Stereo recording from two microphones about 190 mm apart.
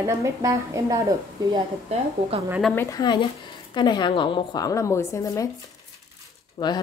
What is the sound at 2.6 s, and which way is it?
A woman's voice, 10° left (ahead or behind).